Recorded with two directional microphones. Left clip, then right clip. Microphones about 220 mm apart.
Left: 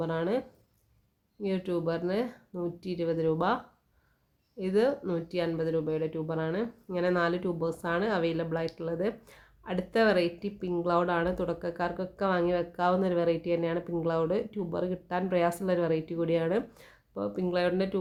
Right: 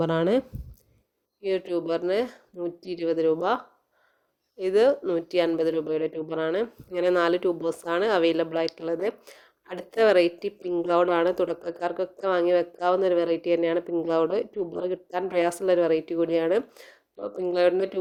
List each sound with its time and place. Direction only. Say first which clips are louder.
0.0 s speech: right 7 dB; 35° right (ahead or behind)